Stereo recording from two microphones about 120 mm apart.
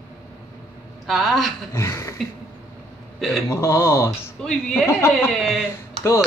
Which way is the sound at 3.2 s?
Centre (ahead or behind).